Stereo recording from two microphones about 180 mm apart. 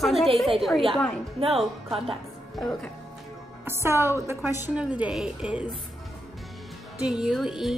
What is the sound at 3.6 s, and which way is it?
A woman's voice, 15° right (ahead or behind).